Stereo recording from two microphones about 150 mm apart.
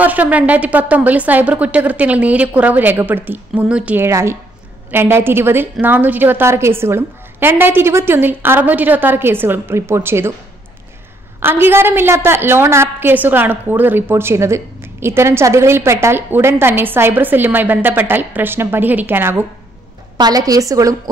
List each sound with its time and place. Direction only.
0.0 s a woman's voice: 10° right (ahead or behind)
11.3 s a woman's voice: 15° right (ahead or behind)
20.2 s a woman's voice: 25° right (ahead or behind)